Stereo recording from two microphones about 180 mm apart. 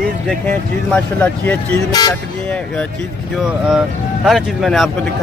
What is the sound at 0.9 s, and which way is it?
Speech, 10° left (ahead or behind).